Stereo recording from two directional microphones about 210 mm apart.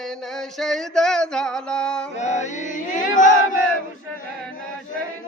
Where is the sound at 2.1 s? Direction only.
35° left (ahead or behind).